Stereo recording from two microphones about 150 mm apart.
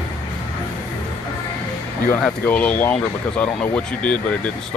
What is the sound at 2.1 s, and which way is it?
Speech, 10° left (ahead or behind).